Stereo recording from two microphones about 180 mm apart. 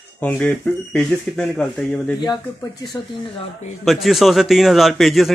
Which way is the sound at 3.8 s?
Centre (ahead or behind).